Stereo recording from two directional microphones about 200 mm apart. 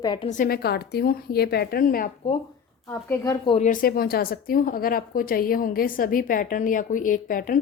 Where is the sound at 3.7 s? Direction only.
45° left (ahead or behind).